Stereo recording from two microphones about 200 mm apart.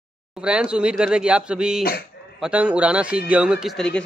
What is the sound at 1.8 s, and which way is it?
Speech, 50° left (ahead or behind).